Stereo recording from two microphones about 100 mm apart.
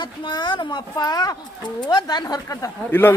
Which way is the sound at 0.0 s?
50° left (ahead or behind).